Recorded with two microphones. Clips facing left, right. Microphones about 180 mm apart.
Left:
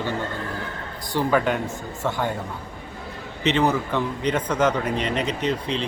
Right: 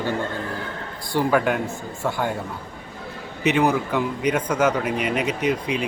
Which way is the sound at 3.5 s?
10° right (ahead or behind).